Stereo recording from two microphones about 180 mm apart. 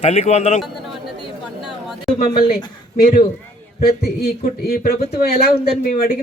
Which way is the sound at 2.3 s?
55° left (ahead or behind).